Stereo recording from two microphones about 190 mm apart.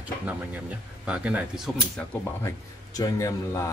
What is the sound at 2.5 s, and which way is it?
Speech, 15° left (ahead or behind).